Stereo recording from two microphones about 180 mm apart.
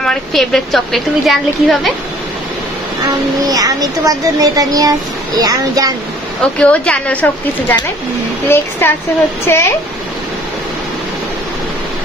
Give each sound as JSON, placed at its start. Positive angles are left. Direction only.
{"t": 0.0, "sound": "a woman's voice", "side_deg": 0}
{"t": 3.4, "sound": "speech", "side_deg": -20}
{"t": 6.4, "sound": "speech", "side_deg": 5}